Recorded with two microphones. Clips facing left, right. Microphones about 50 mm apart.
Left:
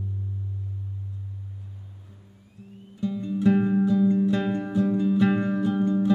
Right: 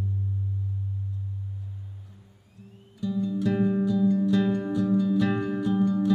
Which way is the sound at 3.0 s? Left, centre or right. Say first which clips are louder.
Even; left.